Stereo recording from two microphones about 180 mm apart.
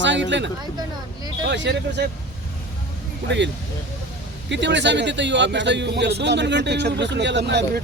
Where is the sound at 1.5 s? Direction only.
75° right (ahead or behind).